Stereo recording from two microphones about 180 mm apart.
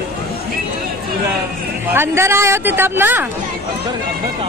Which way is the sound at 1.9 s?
15° right (ahead or behind).